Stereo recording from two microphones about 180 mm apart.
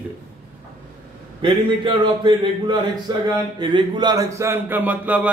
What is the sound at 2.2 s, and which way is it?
Speech, 25° right (ahead or behind).